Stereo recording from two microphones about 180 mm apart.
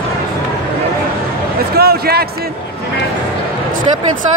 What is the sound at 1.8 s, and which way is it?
Speech, 60° right (ahead or behind).